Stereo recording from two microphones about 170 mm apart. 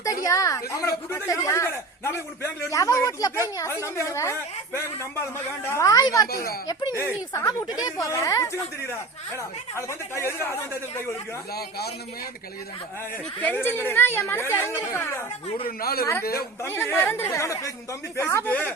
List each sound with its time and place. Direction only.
0.0 s a woman's voice: 20° left (ahead or behind)
6.3 s a man's voice: 60° left (ahead or behind)
6.7 s a woman's voice: 20° left (ahead or behind)
13.4 s a woman's voice: 10° left (ahead or behind)
15.6 s a man's voice: 60° left (ahead or behind)
16.6 s a woman's voice: 15° left (ahead or behind)